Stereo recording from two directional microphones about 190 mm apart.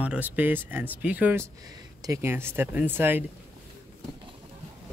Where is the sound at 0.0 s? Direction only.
10° right (ahead or behind).